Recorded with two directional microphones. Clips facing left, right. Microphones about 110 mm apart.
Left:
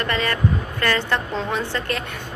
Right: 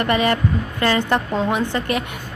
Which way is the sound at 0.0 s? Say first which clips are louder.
Right 4 dB; 15° right (ahead or behind).